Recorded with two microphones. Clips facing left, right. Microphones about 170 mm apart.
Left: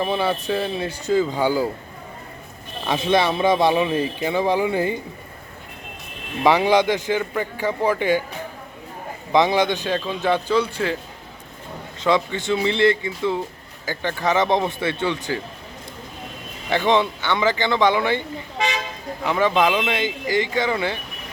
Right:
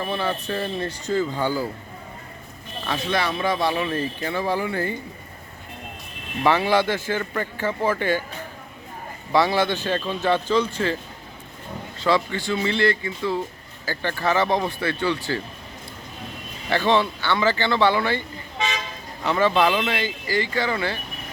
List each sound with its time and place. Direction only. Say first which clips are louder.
0.0 s speech: left 4 dB; 15° left (ahead or behind)
2.8 s speech: left 5 dB; 20° left (ahead or behind)
6.4 s speech: left 3 dB; 15° left (ahead or behind)
9.3 s speech: left 2 dB; 20° left (ahead or behind)
11.9 s speech: left 2 dB; 20° left (ahead or behind)
16.6 s speech: left 1 dB; 15° left (ahead or behind)